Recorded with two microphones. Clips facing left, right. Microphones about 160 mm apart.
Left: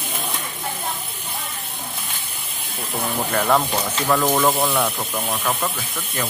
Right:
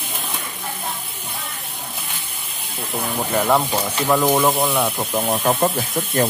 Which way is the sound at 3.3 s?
10° right (ahead or behind).